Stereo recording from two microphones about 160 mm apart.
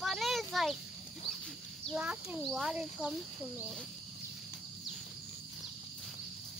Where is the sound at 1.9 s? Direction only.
5° right (ahead or behind).